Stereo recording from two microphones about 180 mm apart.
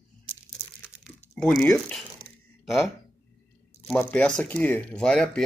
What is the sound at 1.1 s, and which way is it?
Typing, centre (ahead or behind).